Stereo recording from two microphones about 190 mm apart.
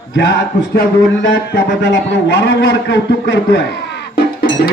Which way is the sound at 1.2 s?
70° left (ahead or behind).